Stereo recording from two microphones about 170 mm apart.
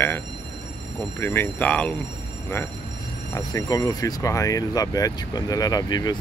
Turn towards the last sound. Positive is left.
turn(degrees=25)  # may be behind; listen again after turning